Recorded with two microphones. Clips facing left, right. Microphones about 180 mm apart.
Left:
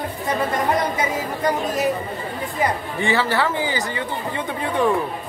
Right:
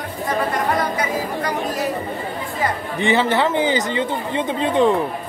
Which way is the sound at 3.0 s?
20° right (ahead or behind).